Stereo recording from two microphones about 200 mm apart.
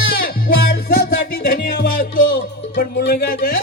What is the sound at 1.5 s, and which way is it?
Music, 55° left (ahead or behind).